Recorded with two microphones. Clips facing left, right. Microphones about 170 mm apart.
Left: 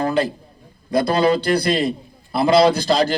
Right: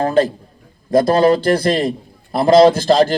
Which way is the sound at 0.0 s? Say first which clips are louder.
Right 5 dB; 45° right (ahead or behind).